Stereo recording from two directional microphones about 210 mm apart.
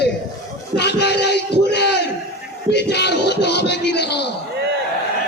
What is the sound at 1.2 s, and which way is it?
Music, 55° left (ahead or behind).